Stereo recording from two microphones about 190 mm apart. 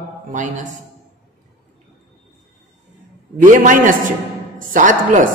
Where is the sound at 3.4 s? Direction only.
45° right (ahead or behind).